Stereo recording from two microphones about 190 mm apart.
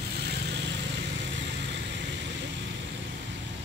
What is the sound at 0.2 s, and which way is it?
Vehicle, 60° right (ahead or behind).